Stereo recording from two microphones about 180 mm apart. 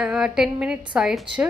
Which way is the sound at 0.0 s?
5° right (ahead or behind).